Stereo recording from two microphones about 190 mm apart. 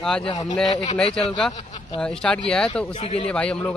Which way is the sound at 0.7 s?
35° left (ahead or behind).